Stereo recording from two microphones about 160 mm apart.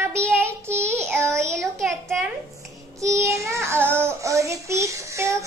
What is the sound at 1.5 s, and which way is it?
Child singing, centre (ahead or behind).